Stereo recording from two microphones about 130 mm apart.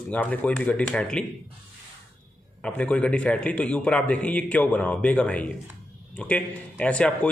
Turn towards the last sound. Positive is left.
turn(degrees=10)  # may be behind; listen again after turning